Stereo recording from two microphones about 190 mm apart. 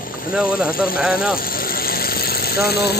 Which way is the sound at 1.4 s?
50° left (ahead or behind).